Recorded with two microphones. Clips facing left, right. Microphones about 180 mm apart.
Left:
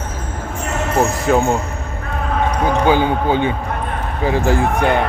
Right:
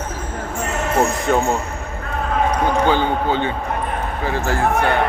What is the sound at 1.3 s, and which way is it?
Speech, centre (ahead or behind).